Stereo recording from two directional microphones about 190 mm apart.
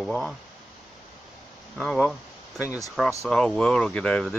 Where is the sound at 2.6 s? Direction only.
15° left (ahead or behind).